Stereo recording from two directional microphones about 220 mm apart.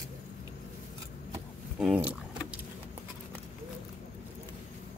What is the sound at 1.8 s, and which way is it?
Vehicle, 5° right (ahead or behind).